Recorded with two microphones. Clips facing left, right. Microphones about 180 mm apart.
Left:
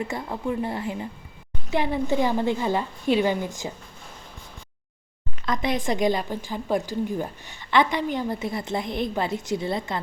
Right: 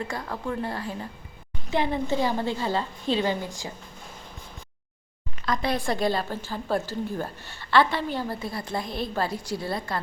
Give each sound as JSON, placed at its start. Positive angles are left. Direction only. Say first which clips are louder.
{"t": 0.0, "sound": "a woman's voice", "louder": "left 3 dB", "side_deg": 20}
{"t": 5.5, "sound": "a woman's voice", "louder": "left 1 dB", "side_deg": 20}